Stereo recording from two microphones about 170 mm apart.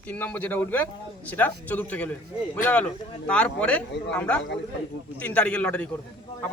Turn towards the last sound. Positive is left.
turn(degrees=5)  # may be behind; listen again after turning